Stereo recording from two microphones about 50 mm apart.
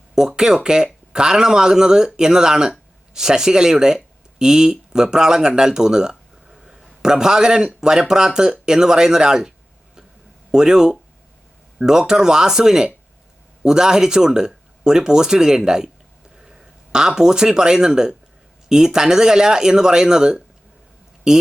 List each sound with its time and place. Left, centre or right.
0.2 s speech: centre
10.5 s speech: centre
16.9 s speech: centre